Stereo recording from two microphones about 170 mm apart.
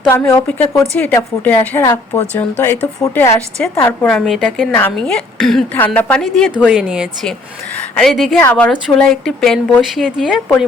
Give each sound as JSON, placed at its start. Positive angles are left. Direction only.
{"t": 0.1, "sound": "a woman's voice", "side_deg": 15}